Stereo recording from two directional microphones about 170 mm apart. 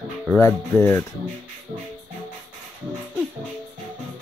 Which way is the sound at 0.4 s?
15° left (ahead or behind).